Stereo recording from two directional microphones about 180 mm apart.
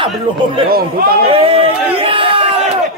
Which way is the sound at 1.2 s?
30° right (ahead or behind).